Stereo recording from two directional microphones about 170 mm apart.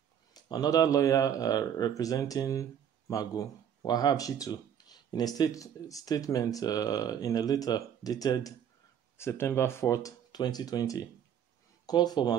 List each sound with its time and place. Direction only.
0.3 s speech: 25° left (ahead or behind)